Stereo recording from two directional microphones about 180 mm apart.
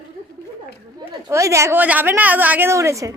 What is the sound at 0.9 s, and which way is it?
A woman's voice, 15° right (ahead or behind).